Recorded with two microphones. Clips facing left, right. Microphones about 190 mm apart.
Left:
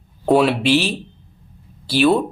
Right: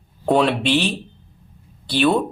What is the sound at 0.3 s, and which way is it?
Speech, 5° left (ahead or behind).